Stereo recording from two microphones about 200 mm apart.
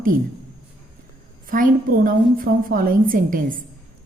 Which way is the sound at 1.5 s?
45° right (ahead or behind).